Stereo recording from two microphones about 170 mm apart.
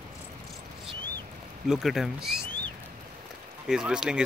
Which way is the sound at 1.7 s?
Centre (ahead or behind).